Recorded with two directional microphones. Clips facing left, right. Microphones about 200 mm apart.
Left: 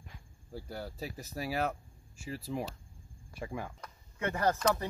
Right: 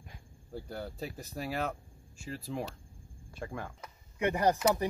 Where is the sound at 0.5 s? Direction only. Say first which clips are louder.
Right 1 dB; 5° left (ahead or behind).